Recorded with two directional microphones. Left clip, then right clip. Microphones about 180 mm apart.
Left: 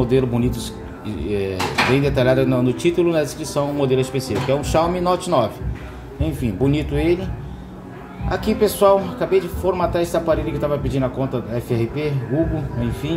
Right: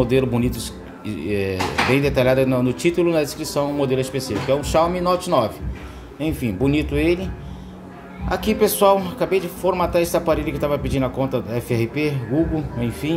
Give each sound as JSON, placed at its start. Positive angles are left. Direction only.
{"t": 0.0, "sound": "speech", "side_deg": -25}
{"t": 8.3, "sound": "speech", "side_deg": -25}